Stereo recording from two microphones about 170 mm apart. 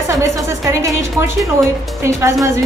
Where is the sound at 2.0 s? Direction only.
15° right (ahead or behind).